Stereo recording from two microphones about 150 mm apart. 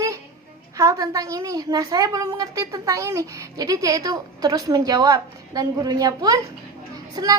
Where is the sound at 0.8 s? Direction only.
25° right (ahead or behind).